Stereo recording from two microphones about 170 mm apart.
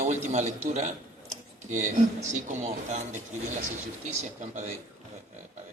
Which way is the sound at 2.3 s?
45° right (ahead or behind).